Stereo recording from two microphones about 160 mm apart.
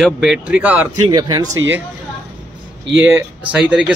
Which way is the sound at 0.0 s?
5° right (ahead or behind).